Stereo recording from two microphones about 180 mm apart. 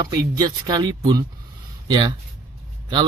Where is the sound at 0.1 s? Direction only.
20° right (ahead or behind).